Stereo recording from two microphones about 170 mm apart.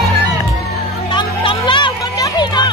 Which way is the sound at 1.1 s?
30° left (ahead or behind).